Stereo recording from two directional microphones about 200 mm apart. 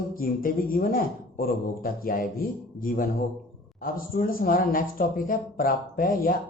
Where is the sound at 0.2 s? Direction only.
45° left (ahead or behind).